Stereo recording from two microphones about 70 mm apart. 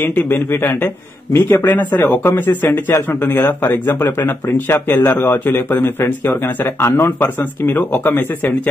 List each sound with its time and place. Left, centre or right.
0.0 s a man's voice: left
1.6 s a man's voice: left